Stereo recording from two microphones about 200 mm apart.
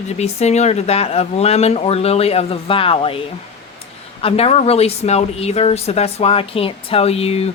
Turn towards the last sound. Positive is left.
turn(degrees=30)  # may be behind; listen again after turning